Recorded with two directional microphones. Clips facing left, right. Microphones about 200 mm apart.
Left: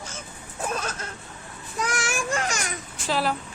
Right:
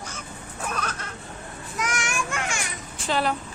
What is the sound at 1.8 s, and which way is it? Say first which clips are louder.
Speech: left 1 dB; 35° left (ahead or behind).